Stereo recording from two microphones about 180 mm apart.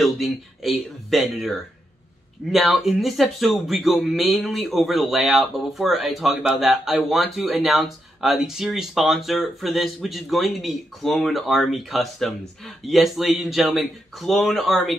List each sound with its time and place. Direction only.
0.0 s speech: centre (ahead or behind)
2.5 s speech: centre (ahead or behind)